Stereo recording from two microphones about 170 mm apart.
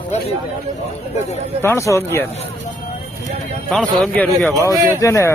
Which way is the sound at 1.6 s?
15° left (ahead or behind).